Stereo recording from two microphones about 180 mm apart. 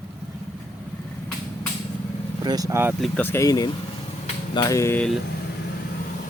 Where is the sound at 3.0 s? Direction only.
5° left (ahead or behind).